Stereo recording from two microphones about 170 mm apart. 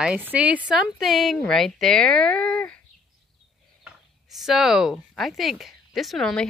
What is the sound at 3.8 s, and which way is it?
Speech, centre (ahead or behind).